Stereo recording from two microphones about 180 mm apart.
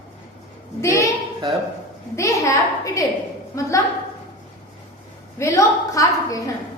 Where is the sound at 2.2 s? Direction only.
15° left (ahead or behind).